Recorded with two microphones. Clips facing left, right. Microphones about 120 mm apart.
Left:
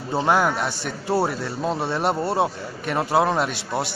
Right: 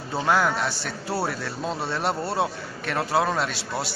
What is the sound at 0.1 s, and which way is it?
Speech, 15° left (ahead or behind).